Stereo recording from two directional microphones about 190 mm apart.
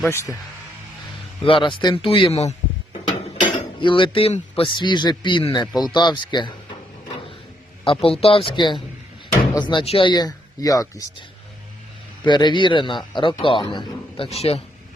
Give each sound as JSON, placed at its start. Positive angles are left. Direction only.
{"t": 0.0, "sound": "speech", "side_deg": 15}
{"t": 1.5, "sound": "speech", "side_deg": 25}
{"t": 7.9, "sound": "speech", "side_deg": 30}
{"t": 12.2, "sound": "speech", "side_deg": 25}